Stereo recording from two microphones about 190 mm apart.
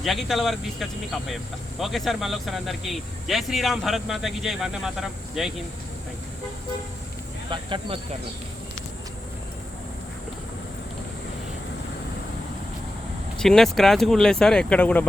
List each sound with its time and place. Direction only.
0.0 s speech: centre (ahead or behind)
7.5 s speech: 25° right (ahead or behind)
13.4 s speech: 5° left (ahead or behind)